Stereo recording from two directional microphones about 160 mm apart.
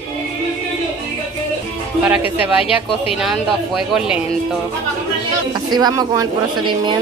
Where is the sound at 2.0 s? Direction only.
10° right (ahead or behind).